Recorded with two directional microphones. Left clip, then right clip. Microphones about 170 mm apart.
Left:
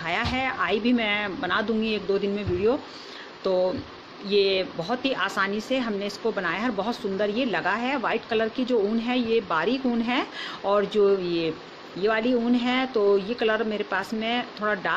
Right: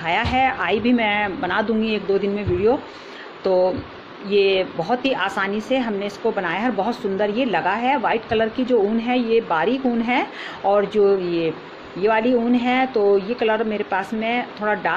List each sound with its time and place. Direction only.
0.0 s speech: 10° left (ahead or behind)
4.3 s speech: 10° left (ahead or behind)